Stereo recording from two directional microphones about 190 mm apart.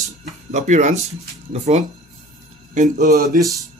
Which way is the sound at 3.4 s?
15° right (ahead or behind).